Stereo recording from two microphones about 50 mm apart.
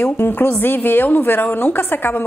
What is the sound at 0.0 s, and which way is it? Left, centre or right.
A woman's voice, left.